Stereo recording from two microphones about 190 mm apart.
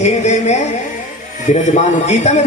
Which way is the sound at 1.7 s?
35° left (ahead or behind).